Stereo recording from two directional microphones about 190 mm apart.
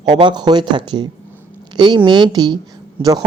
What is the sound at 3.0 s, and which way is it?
Speech, 10° right (ahead or behind).